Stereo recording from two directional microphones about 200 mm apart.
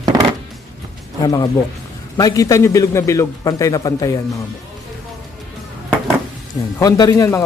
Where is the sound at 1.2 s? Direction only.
20° left (ahead or behind).